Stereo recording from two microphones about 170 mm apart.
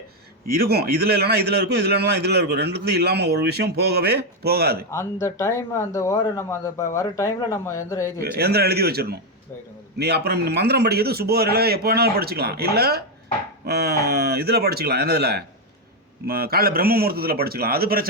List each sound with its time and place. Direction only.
0.4 s a man's voice: 70° right (ahead or behind)
5.2 s speech: 15° left (ahead or behind)
8.2 s a man's voice: 70° right (ahead or behind)